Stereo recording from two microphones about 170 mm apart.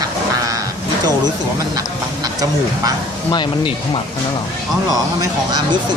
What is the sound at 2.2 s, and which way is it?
Speech, 20° right (ahead or behind).